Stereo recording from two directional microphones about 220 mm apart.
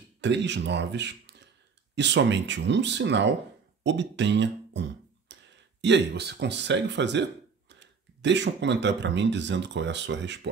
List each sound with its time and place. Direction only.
0.2 s speech: 55° right (ahead or behind)